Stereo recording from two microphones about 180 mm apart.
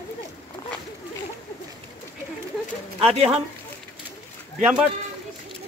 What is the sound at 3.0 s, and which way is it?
Speech, 35° right (ahead or behind).